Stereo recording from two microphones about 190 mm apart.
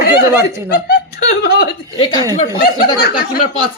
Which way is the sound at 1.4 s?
55° left (ahead or behind).